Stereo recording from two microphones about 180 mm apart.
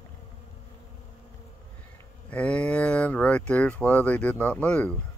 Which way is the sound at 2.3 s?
5° left (ahead or behind).